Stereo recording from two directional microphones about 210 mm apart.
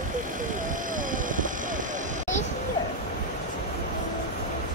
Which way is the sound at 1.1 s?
40° right (ahead or behind).